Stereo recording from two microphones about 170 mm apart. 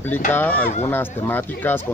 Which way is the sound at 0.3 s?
10° left (ahead or behind).